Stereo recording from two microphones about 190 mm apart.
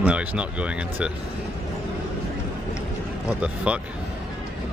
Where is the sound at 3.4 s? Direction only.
5° right (ahead or behind).